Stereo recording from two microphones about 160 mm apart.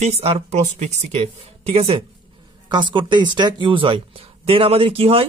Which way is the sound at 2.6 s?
30° right (ahead or behind).